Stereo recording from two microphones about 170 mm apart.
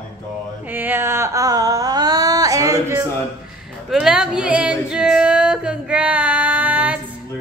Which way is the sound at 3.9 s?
5° right (ahead or behind).